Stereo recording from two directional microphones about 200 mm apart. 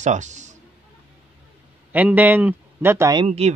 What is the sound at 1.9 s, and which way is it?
A man's voice, 10° right (ahead or behind).